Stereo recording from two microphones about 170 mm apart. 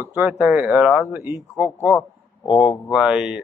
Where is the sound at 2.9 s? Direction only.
Centre (ahead or behind).